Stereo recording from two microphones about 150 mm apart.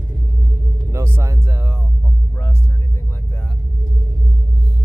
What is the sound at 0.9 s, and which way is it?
Speech, 15° right (ahead or behind).